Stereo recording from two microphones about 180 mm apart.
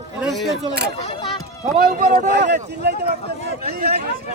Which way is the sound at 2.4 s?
65° right (ahead or behind).